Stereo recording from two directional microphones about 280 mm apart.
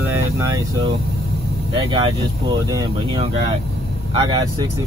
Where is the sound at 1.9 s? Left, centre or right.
Centre.